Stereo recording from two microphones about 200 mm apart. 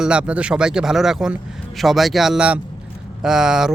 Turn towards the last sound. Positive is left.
turn(degrees=-5)  # may be behind; listen again after turning